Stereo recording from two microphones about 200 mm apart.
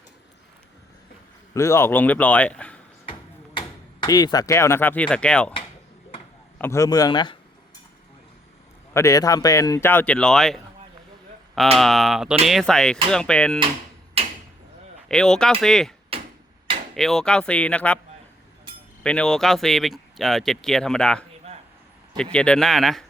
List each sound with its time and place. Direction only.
1.5 s speech: 15° left (ahead or behind)
4.0 s speech: 20° left (ahead or behind)
6.6 s speech: 15° left (ahead or behind)
8.9 s speech: 15° left (ahead or behind)
11.8 s speech: centre (ahead or behind)
15.1 s speech: 5° left (ahead or behind)
16.1 s tick-tock: 30° right (ahead or behind)
16.9 s speech: centre (ahead or behind)
19.0 s speech: 5° left (ahead or behind)